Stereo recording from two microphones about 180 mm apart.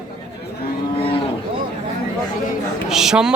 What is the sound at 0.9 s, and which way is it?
Cattle, 30° left (ahead or behind).